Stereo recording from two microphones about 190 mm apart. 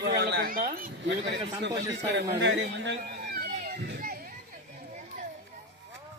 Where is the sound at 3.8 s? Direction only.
55° right (ahead or behind).